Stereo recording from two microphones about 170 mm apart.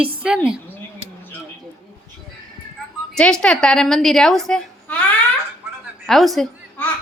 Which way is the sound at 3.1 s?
5° left (ahead or behind).